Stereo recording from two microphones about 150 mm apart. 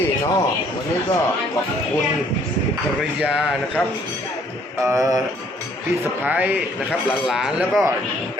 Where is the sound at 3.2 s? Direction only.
5° right (ahead or behind).